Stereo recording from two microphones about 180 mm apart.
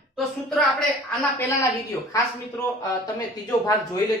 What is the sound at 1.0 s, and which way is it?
A man's voice, 10° left (ahead or behind).